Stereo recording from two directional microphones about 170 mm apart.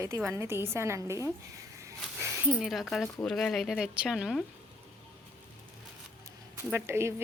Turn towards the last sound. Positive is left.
turn(degrees=-15)  # may be behind; listen again after turning